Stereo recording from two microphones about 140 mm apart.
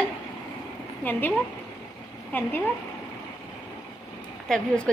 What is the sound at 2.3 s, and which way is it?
Speech, 15° left (ahead or behind).